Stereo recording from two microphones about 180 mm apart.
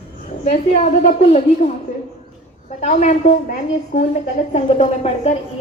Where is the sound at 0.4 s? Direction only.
35° left (ahead or behind).